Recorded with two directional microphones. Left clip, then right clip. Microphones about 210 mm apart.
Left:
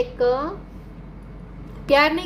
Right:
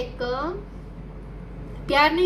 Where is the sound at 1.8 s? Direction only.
45° left (ahead or behind).